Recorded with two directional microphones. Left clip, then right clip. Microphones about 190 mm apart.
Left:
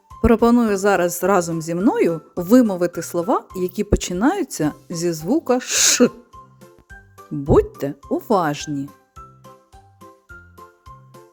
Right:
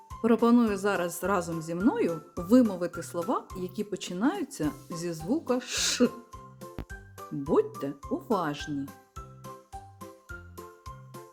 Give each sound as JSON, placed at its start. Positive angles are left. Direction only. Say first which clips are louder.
{"t": 0.2, "sound": "speech", "louder": "left 8 dB", "side_deg": 40}
{"t": 6.6, "sound": "music", "louder": "even", "side_deg": 0}
{"t": 8.1, "sound": "speech", "louder": "left 11 dB", "side_deg": 40}
{"t": 8.9, "sound": "music", "louder": "left 4 dB", "side_deg": 0}
{"t": 10.0, "sound": "jingle", "louder": "left 3 dB", "side_deg": 0}